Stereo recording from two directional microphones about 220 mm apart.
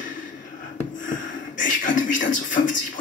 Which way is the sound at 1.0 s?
35° left (ahead or behind).